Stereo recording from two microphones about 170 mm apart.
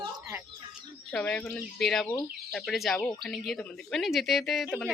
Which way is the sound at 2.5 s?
Centre (ahead or behind).